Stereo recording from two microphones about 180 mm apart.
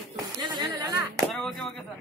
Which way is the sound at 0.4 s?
25° right (ahead or behind).